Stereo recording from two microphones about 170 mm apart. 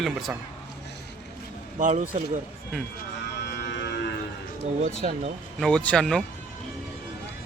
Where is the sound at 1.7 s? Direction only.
50° right (ahead or behind).